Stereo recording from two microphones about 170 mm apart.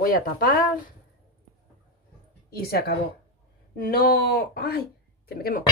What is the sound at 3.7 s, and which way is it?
Speech, 60° left (ahead or behind).